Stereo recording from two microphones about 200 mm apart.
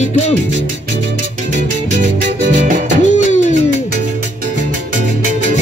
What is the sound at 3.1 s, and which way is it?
Music, 35° left (ahead or behind).